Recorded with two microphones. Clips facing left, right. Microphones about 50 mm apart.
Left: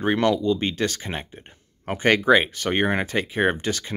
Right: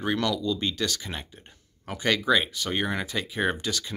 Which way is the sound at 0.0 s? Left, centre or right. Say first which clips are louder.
Left 6 dB; left.